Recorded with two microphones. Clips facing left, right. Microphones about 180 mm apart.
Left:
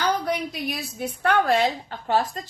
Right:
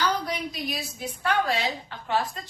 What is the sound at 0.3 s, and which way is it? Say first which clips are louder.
A woman's voice: left 4 dB; 60° left (ahead or behind).